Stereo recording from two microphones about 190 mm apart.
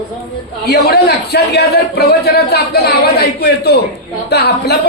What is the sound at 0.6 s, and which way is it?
A man's voice, 55° left (ahead or behind).